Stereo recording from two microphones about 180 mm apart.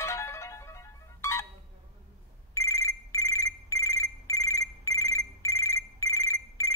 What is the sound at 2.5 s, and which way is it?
Telephone bell ringing, 15° left (ahead or behind).